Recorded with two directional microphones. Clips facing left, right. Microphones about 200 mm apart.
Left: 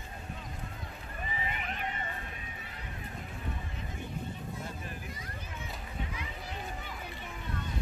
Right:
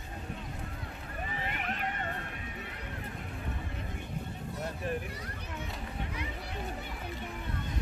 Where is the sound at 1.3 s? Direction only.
65° right (ahead or behind).